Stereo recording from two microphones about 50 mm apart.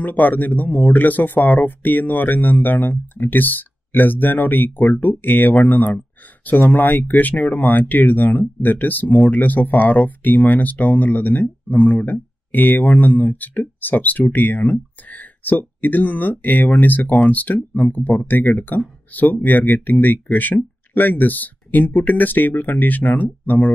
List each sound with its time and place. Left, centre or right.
0.0 s speech: left